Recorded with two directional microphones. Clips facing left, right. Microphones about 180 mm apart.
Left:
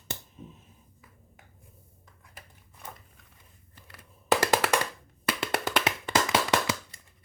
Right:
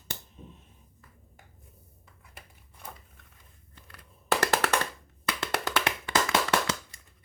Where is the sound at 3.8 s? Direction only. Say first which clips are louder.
Left 1 dB; 10° left (ahead or behind).